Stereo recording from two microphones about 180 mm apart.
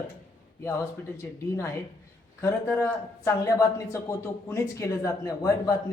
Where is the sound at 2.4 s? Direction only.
15° left (ahead or behind).